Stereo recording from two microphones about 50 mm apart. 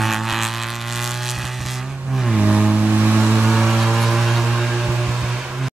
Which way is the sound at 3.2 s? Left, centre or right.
Centre.